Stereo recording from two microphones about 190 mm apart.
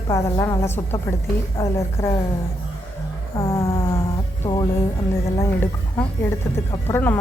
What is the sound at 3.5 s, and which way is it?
Speech, 15° left (ahead or behind).